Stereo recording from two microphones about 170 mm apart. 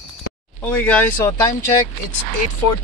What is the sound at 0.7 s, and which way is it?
Speech, 10° left (ahead or behind).